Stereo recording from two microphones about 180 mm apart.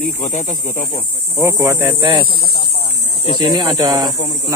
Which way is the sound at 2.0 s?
25° right (ahead or behind).